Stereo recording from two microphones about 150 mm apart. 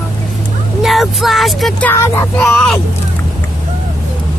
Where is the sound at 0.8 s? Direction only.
Centre (ahead or behind).